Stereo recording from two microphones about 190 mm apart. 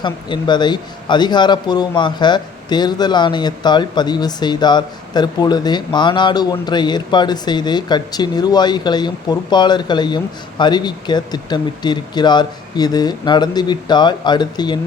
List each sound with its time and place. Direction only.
0.0 s a man's voice: 25° left (ahead or behind)